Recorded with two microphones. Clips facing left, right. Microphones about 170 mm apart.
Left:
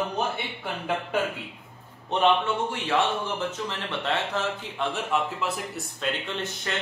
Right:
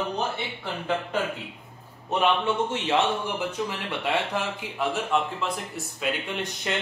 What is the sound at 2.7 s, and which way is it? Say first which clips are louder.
A man's voice: right 1 dB; 20° right (ahead or behind).